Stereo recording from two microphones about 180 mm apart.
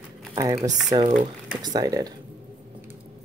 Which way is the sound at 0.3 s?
20° right (ahead or behind).